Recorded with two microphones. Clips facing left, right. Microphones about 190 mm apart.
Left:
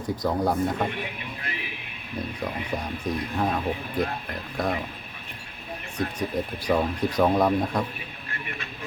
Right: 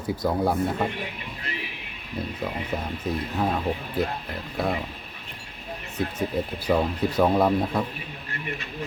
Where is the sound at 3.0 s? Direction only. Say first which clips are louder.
Even; 5° right (ahead or behind).